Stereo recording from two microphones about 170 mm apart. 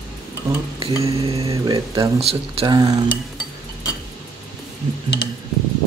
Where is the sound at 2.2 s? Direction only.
35° right (ahead or behind).